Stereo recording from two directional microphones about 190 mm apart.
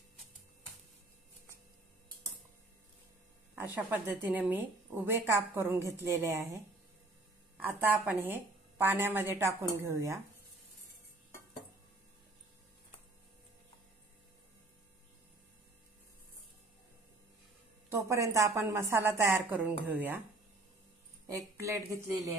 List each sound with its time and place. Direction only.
3.7 s a woman's voice: 10° right (ahead or behind)
17.8 s a woman's voice: 15° right (ahead or behind)
21.5 s a woman's voice: 15° right (ahead or behind)